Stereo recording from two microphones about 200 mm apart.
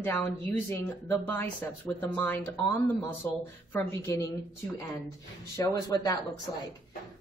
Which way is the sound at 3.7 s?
15° left (ahead or behind).